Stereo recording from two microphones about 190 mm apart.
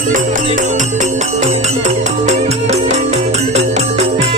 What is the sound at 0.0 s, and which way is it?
Music, 45° right (ahead or behind).